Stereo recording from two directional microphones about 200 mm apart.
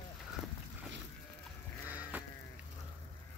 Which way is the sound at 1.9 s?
10° right (ahead or behind).